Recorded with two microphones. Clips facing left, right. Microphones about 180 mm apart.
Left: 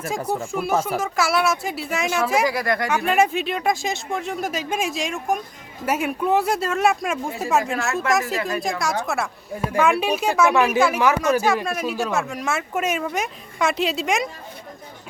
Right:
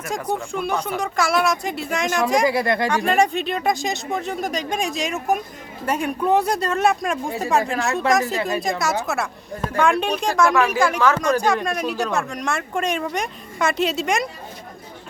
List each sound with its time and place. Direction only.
0.5 s speech: 5° left (ahead or behind)
2.5 s speech: 25° right (ahead or behind)
3.1 s speech: 5° left (ahead or behind)